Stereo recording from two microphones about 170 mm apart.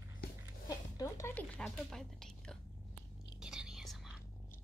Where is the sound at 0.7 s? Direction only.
20° left (ahead or behind).